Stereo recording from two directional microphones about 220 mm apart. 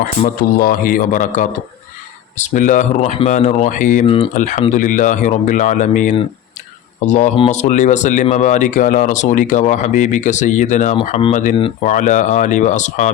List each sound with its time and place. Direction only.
0.5 s speech: 40° left (ahead or behind)
4.0 s speech: 25° left (ahead or behind)
4.7 s speech: 35° left (ahead or behind)